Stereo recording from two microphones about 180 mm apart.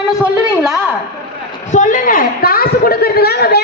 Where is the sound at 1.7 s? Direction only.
45° left (ahead or behind); by 3.6 s 60° left (ahead or behind).